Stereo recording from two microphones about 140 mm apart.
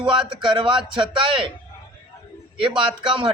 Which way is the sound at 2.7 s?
35° right (ahead or behind).